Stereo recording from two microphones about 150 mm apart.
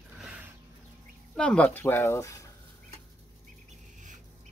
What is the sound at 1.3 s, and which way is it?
Speech, 5° left (ahead or behind).